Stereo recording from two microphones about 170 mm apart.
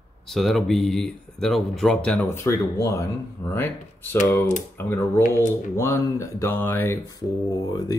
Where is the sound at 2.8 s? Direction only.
20° left (ahead or behind).